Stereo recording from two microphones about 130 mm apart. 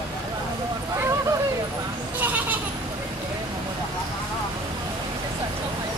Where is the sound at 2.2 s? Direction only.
15° right (ahead or behind).